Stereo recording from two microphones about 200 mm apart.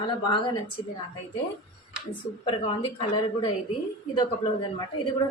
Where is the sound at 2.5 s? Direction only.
25° left (ahead or behind).